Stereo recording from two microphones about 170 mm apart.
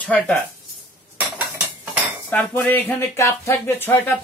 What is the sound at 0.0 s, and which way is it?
Speech, 10° left (ahead or behind).